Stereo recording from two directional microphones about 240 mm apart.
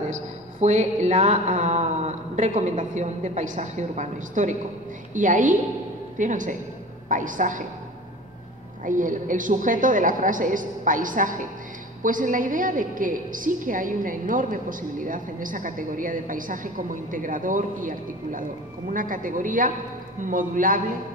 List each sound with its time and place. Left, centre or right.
0.1 s a woman's voice: right
8.8 s a woman's voice: right